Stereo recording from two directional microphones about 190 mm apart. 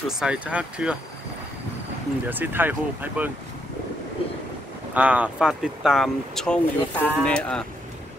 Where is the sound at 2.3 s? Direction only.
10° right (ahead or behind).